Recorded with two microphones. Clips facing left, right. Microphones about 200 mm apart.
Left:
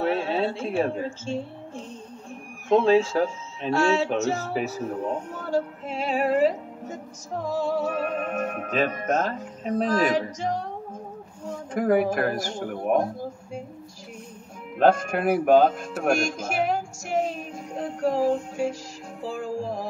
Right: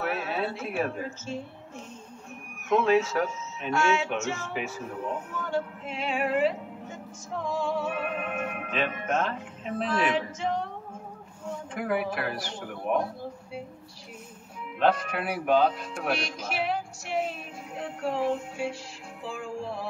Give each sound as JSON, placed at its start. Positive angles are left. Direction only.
{"t": 0.0, "sound": "a woman's voice", "side_deg": 30}
{"t": 14.8, "sound": "speech", "side_deg": 45}
{"t": 16.0, "sound": "music", "side_deg": 45}